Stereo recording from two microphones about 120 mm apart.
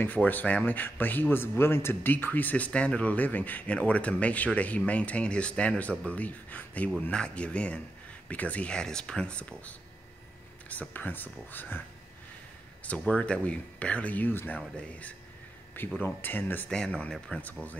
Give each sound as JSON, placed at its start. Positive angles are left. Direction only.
{"t": 0.0, "sound": "speech", "side_deg": 15}
{"t": 12.8, "sound": "speech", "side_deg": 10}